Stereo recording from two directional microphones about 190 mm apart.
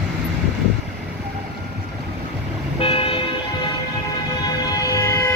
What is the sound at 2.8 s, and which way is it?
Vehicle, 30° left (ahead or behind).